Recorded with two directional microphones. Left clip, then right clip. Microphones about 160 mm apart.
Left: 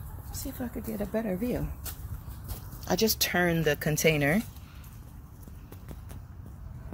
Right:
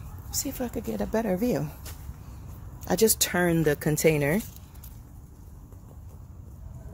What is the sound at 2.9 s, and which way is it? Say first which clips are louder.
Speech: right 3 dB; 40° right (ahead or behind).